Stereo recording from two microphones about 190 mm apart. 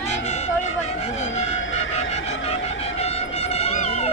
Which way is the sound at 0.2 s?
35° left (ahead or behind).